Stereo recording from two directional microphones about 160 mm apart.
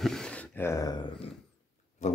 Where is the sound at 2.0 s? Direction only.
50° left (ahead or behind).